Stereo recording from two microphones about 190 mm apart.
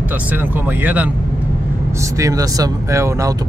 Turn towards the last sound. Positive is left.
turn(degrees=-15)  # may be behind; listen again after turning